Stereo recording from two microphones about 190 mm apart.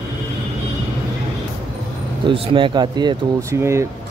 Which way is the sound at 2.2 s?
25° right (ahead or behind).